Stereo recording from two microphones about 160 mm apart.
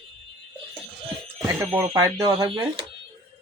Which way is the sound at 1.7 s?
20° right (ahead or behind).